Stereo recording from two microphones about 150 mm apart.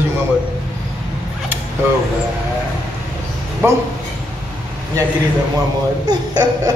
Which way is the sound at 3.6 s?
15° right (ahead or behind).